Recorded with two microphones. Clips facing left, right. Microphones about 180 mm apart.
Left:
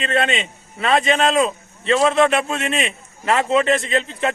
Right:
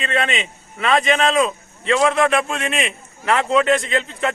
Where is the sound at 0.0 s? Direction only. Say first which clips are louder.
Left 2 dB; 35° left (ahead or behind).